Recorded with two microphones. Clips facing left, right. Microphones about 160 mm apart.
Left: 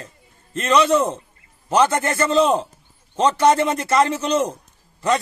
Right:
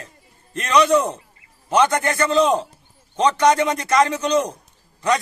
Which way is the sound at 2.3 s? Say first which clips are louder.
Left 1 dB; centre (ahead or behind).